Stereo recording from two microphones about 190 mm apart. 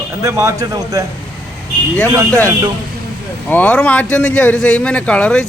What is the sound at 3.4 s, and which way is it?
A man's voice, 10° left (ahead or behind).